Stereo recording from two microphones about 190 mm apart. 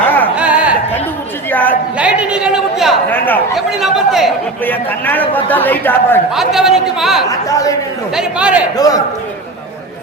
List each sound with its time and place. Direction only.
0.3 s a sound: 5° right (ahead or behind)
1.5 s chatter: 10° left (ahead or behind)
2.0 s a woman's voice: 5° right (ahead or behind)
3.1 s speech: 10° left (ahead or behind)
3.5 s speech: centre (ahead or behind)
4.6 s speech: 10° left (ahead or behind)
6.3 s speech: centre (ahead or behind)
7.3 s speech: 20° left (ahead or behind)
8.1 s speech: 5° right (ahead or behind)
8.7 s a man's voice: 20° left (ahead or behind)